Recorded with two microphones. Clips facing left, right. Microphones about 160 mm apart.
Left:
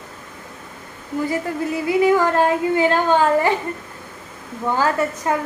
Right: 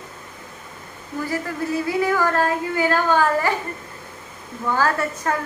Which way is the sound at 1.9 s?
20° left (ahead or behind).